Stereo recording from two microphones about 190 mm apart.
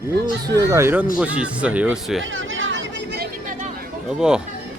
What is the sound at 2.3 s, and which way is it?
Vehicle, 90° right.